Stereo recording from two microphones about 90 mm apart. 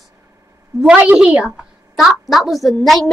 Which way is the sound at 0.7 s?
10° right (ahead or behind).